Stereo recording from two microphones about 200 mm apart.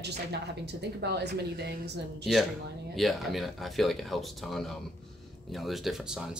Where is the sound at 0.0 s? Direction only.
55° right (ahead or behind).